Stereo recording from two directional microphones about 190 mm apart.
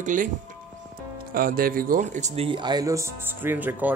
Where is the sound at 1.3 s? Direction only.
50° right (ahead or behind).